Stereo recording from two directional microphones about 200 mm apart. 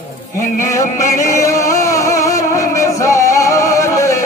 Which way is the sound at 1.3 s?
15° left (ahead or behind).